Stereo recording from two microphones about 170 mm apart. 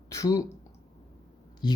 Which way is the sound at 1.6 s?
25° left (ahead or behind).